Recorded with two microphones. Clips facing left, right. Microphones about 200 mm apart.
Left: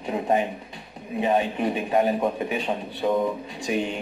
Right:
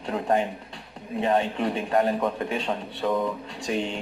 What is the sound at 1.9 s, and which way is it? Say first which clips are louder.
Speech: left 1 dB; 10° left (ahead or behind).